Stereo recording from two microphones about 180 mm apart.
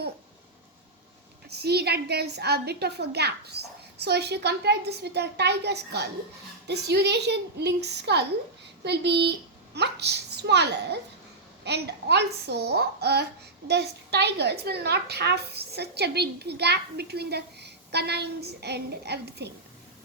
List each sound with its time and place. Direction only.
1.5 s a woman's voice: 65° right (ahead or behind)